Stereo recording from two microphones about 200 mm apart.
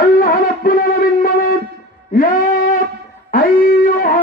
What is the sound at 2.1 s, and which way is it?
Music, 45° left (ahead or behind).